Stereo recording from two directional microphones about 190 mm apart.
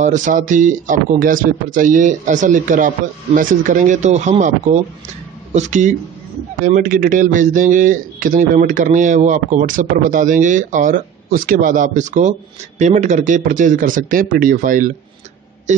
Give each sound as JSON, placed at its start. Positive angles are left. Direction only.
{"t": 0.0, "sound": "a man's voice", "side_deg": -40}